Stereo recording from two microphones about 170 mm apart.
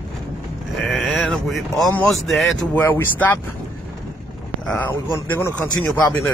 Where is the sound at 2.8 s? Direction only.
15° left (ahead or behind).